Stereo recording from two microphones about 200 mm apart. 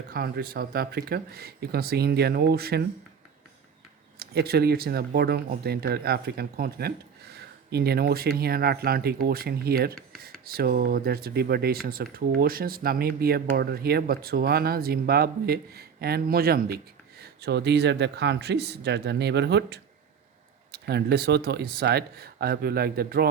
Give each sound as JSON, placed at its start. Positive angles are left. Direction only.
{"t": 0.1, "sound": "speech", "side_deg": -50}
{"t": 4.2, "sound": "speech", "side_deg": -55}